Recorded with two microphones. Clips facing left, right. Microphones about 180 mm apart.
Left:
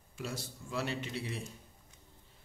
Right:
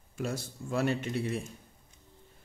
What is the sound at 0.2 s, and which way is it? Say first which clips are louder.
Speech: right 6 dB; 50° right (ahead or behind).